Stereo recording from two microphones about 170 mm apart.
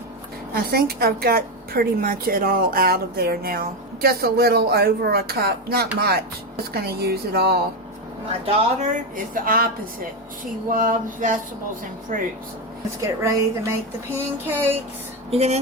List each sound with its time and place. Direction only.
0.5 s a woman's voice: 65° right (ahead or behind)
8.4 s a woman's voice: 45° right (ahead or behind)
10.7 s a sound: 50° right (ahead or behind)
13.0 s a woman's voice: 20° right (ahead or behind)
15.3 s speech: 40° right (ahead or behind)